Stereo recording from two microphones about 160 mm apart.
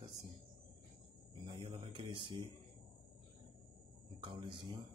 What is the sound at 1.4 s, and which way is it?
Speech, 30° right (ahead or behind).